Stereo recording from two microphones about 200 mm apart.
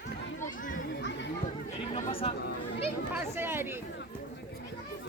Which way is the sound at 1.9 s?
30° left (ahead or behind).